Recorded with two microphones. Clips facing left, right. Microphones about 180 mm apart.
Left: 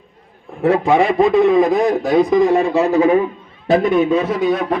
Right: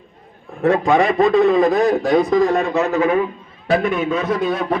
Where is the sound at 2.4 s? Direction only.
25° left (ahead or behind).